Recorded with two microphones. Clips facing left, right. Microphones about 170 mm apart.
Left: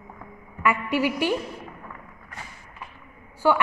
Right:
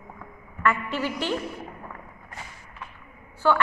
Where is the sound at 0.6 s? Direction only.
10° left (ahead or behind).